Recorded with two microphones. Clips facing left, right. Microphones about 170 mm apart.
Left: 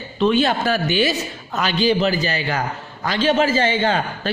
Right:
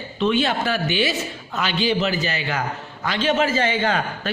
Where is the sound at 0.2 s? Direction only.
40° left (ahead or behind).